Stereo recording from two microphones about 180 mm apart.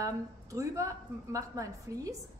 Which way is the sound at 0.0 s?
15° right (ahead or behind).